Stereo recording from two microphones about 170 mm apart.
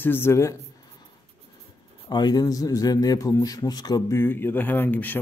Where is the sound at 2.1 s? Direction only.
25° left (ahead or behind).